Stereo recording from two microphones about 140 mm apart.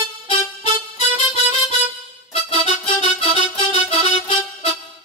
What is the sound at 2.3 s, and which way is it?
Music, 45° left (ahead or behind).